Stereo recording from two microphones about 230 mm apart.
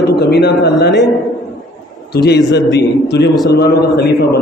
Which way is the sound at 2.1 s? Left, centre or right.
Left.